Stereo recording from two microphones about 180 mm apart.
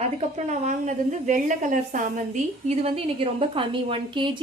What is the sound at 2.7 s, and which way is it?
A woman's voice, 35° right (ahead or behind).